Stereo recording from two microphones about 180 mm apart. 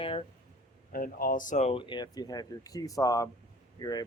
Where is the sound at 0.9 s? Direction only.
55° left (ahead or behind).